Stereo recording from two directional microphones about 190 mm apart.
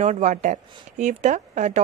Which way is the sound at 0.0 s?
35° right (ahead or behind).